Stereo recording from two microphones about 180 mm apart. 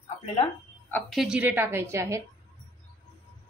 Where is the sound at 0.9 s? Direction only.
Centre (ahead or behind); by 2.2 s 15° right (ahead or behind).